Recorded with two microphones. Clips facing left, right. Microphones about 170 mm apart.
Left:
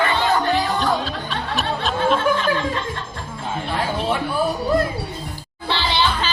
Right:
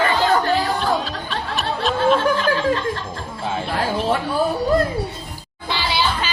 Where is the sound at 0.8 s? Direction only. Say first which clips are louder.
Even; centre (ahead or behind).